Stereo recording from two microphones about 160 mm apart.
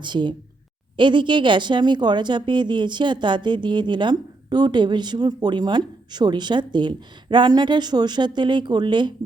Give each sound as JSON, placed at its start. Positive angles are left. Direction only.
{"t": 0.0, "sound": "speech", "side_deg": -30}